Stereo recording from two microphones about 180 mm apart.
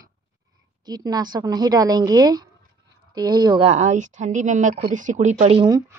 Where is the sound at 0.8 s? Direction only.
20° right (ahead or behind); by 5.6 s 40° right (ahead or behind).